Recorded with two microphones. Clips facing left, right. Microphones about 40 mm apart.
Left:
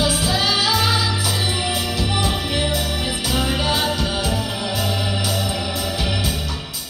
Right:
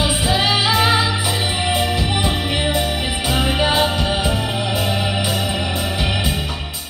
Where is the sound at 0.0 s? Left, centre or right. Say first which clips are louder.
Right 2 dB; right.